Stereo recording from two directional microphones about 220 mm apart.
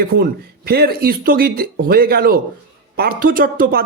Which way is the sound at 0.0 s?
45° right (ahead or behind).